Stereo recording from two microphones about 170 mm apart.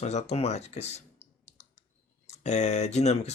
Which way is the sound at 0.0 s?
40° left (ahead or behind).